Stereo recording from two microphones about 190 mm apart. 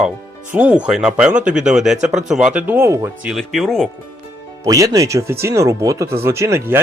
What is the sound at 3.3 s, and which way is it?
Speech, centre (ahead or behind).